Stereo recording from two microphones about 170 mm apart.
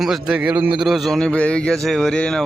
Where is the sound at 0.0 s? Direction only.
5° right (ahead or behind).